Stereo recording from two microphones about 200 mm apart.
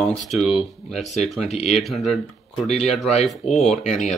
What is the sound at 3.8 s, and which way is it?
Speech, 35° left (ahead or behind).